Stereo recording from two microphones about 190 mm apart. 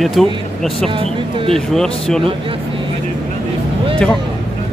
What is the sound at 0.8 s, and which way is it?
Speech, 30° right (ahead or behind).